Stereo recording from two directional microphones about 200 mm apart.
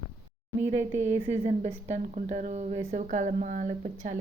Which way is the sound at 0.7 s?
35° right (ahead or behind).